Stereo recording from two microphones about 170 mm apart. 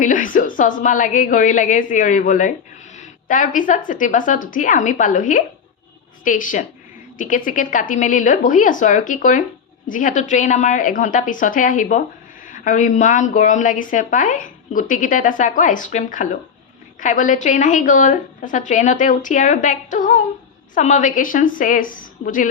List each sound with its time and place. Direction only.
0.0 s a woman's voice: 50° left (ahead or behind)